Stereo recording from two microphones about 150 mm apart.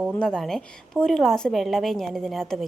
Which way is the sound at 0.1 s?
5° left (ahead or behind).